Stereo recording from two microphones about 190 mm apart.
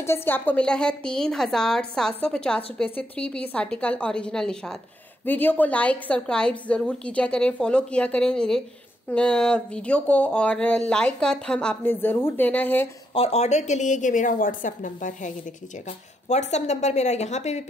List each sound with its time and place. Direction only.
0.0 s a woman's voice: 10° left (ahead or behind)
13.1 s a woman's voice: 35° left (ahead or behind)